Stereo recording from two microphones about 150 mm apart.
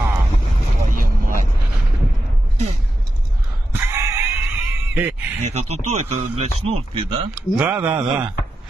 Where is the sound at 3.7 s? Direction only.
15° right (ahead or behind).